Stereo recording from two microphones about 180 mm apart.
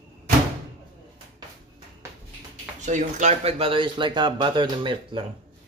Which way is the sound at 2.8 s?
40° right (ahead or behind).